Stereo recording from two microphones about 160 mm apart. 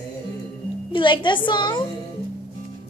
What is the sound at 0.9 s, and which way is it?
Speech, 30° left (ahead or behind).